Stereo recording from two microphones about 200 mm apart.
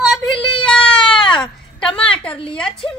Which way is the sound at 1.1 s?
25° left (ahead or behind).